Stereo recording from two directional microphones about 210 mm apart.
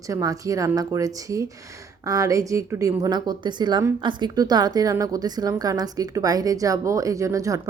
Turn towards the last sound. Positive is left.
turn(degrees=-15)  # may be behind; listen again after turning